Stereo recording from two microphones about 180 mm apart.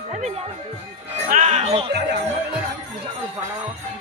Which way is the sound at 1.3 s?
40° right (ahead or behind).